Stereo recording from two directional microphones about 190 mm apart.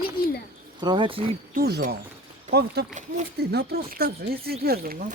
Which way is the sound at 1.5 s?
55° right (ahead or behind).